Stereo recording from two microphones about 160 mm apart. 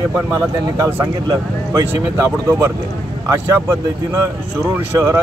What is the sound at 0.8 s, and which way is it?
Speech, 20° right (ahead or behind).